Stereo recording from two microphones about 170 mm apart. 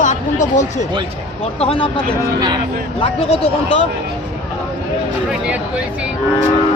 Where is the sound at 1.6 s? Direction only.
30° left (ahead or behind).